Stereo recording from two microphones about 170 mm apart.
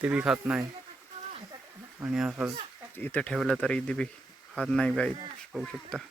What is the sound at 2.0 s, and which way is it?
Speech, 5° right (ahead or behind).